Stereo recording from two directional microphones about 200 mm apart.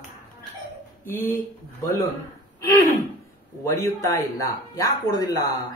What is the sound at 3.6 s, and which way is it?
A man's voice, 15° left (ahead or behind).